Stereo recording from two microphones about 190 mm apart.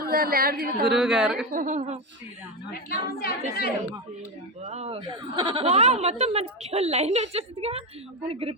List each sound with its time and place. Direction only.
0.1 s a woman's voice: 50° right (ahead or behind)
0.9 s a woman's voice: 5° right (ahead or behind)
1.5 s a woman's voice: 45° right (ahead or behind)
2.7 s a woman's voice: 50° left (ahead or behind)
4.6 s a woman's voice: 35° right (ahead or behind)